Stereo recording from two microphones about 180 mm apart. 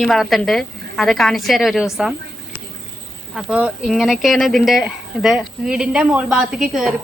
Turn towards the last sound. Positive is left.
turn(degrees=0)  # may be behind; listen again after turning